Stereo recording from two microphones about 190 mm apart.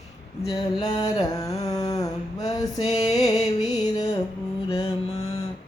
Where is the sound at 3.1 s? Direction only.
20° left (ahead or behind).